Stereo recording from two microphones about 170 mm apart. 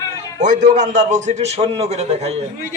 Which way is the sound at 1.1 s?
45° right (ahead or behind).